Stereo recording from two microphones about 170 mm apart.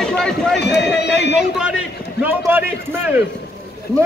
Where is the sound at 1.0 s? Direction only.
90° left.